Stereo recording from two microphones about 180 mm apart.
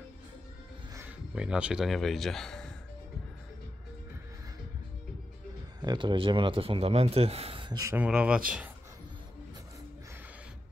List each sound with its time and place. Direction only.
0.9 s speech: 10° right (ahead or behind)
5.8 s speech: 25° right (ahead or behind); by 8.4 s 5° right (ahead or behind)